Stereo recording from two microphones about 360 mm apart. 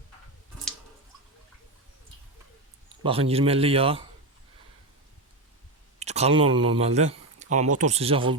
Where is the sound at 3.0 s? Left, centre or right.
Centre.